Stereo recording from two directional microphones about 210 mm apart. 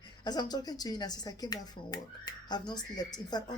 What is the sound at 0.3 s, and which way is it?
Speech, 20° left (ahead or behind).